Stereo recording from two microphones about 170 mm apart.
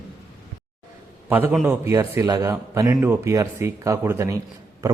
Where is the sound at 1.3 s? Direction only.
10° right (ahead or behind).